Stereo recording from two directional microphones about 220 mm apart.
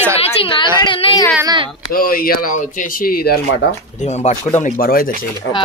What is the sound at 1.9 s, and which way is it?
Speech, 40° left (ahead or behind).